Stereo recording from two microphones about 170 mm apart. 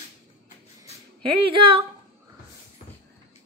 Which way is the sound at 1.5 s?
30° right (ahead or behind).